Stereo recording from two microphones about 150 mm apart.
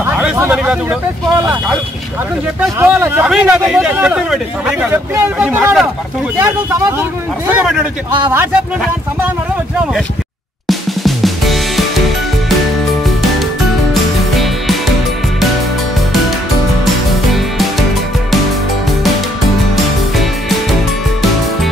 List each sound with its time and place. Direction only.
0.1 s speech: 10° right (ahead or behind)
2.8 s speech: 15° right (ahead or behind)
10.7 s music: centre (ahead or behind)
13.0 s music: centre (ahead or behind)
16.8 s music: centre (ahead or behind)
19.7 s music: centre (ahead or behind)